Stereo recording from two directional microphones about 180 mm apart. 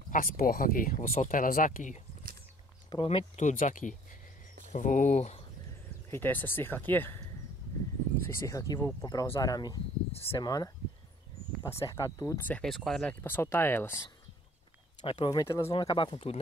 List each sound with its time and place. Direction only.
0.1 s speech: 55° left (ahead or behind)
2.9 s speech: 30° left (ahead or behind)
3.4 s speech: 45° left (ahead or behind)
6.0 s speech: 10° left (ahead or behind)
8.2 s speech: 20° left (ahead or behind)
15.0 s speech: 30° left (ahead or behind)